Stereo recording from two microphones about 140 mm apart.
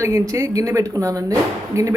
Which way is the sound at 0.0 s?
20° right (ahead or behind).